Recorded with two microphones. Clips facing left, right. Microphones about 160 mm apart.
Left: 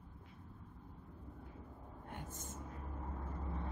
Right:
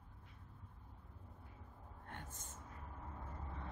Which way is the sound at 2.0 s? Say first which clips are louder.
Left 4 dB; 10° left (ahead or behind).